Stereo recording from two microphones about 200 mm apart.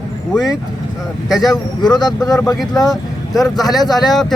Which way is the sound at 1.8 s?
20° left (ahead or behind).